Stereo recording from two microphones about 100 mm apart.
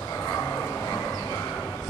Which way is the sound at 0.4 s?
20° left (ahead or behind).